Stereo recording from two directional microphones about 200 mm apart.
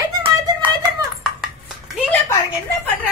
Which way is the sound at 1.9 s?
5° left (ahead or behind).